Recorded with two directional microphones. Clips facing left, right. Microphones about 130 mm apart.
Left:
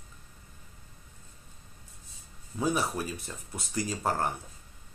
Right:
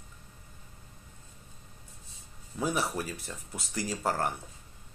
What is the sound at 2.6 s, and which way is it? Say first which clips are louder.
Speech: left 2 dB; 20° left (ahead or behind).